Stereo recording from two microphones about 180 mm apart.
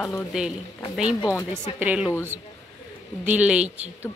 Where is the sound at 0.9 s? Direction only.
5° right (ahead or behind).